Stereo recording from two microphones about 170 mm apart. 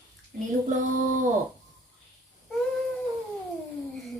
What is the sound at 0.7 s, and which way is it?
Speech, 50° right (ahead or behind).